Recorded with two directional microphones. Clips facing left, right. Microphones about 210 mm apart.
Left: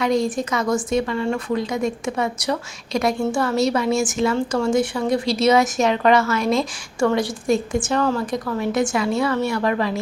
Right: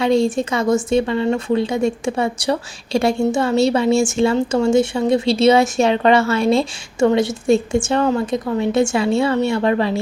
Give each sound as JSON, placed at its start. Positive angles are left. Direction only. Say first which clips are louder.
{"t": 0.0, "sound": "a woman's voice", "louder": "right 4 dB", "side_deg": -25}